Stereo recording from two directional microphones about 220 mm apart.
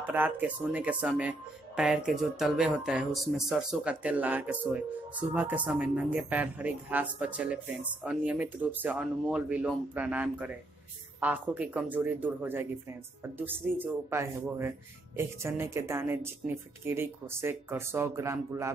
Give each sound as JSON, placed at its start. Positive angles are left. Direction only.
{"t": 0.0, "sound": "speech", "side_deg": -10}